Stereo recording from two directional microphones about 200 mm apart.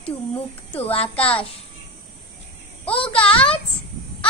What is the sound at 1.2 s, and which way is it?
Speech, 30° left (ahead or behind).